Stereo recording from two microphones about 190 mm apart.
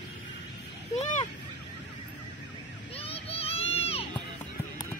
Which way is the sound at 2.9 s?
30° left (ahead or behind).